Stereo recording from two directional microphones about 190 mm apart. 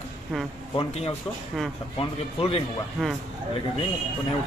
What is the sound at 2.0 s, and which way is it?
Speech, 30° left (ahead or behind).